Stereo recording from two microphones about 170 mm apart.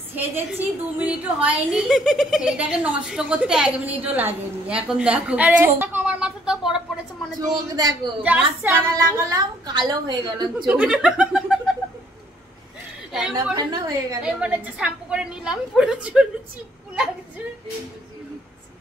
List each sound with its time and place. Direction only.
0.6 s a woman's voice: 10° right (ahead or behind)
7.3 s a woman's voice: 25° right (ahead or behind)
8.2 s a woman's voice: 10° right (ahead or behind); by 10.7 s 25° right (ahead or behind)
10.7 s speech: 5° right (ahead or behind)
13.1 s speech: 5° right (ahead or behind)
13.6 s a woman's voice: 25° right (ahead or behind)
14.2 s speech: 10° right (ahead or behind)